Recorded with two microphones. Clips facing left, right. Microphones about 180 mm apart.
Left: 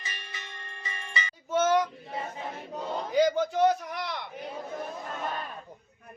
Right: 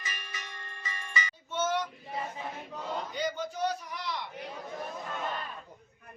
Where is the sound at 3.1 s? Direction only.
90° left; by 4.3 s 60° left (ahead or behind).